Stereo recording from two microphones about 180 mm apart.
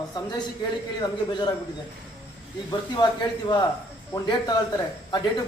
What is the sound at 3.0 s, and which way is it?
Speech, 25° left (ahead or behind).